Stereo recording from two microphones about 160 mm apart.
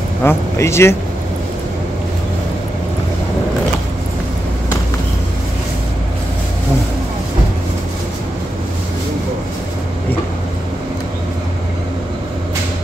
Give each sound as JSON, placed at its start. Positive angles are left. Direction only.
{"t": 0.2, "sound": "speech", "side_deg": 15}